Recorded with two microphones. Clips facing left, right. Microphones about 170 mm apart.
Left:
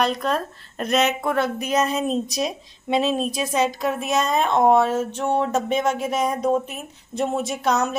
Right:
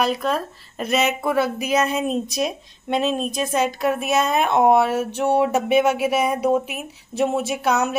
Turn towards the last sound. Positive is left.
turn(degrees=-5)  # may be behind; listen again after turning